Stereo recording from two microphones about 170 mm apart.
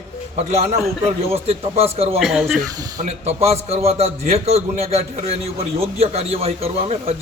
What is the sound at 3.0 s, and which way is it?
A man's voice, 40° right (ahead or behind).